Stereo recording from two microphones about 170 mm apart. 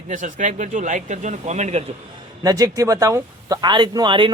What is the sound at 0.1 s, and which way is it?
Speech, 50° right (ahead or behind).